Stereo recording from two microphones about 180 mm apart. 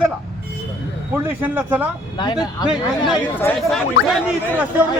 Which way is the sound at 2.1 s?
25° left (ahead or behind).